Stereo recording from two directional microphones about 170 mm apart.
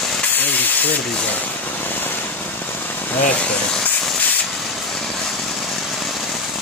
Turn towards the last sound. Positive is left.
turn(degrees=0)  # may be behind; listen again after turning